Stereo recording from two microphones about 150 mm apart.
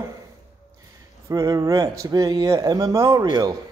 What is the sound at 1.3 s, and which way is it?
Speech, 25° right (ahead or behind).